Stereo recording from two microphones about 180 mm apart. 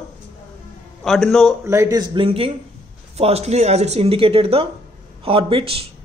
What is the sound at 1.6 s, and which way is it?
Speech, 15° right (ahead or behind).